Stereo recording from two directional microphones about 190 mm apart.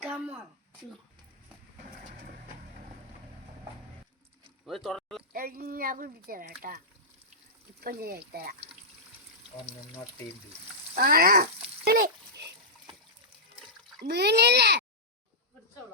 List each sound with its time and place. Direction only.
0.0 s a sound: 5° right (ahead or behind)
4.6 s speech: centre (ahead or behind)
5.3 s speech: 50° right (ahead or behind)
10.9 s a child's voice: 50° right (ahead or behind)
14.0 s a child's voice: 60° right (ahead or behind)